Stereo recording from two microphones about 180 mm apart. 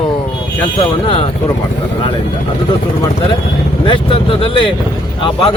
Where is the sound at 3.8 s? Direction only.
30° left (ahead or behind).